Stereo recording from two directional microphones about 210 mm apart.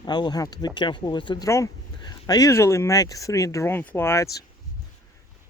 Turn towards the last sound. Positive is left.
turn(degrees=15)  # may be behind; listen again after turning